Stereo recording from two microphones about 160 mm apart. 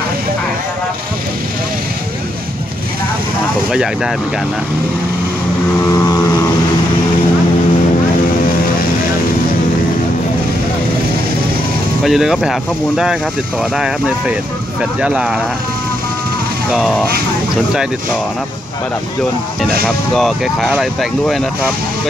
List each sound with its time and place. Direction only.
3.7 s speech: 5° right (ahead or behind)
5.9 s vehicle: 20° left (ahead or behind)
12.0 s speech: 5° right (ahead or behind)
16.7 s speech: centre (ahead or behind)
20.2 s speech: centre (ahead or behind)